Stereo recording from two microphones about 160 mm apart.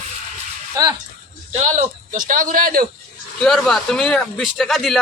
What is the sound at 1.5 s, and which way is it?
A man's voice, 45° right (ahead or behind).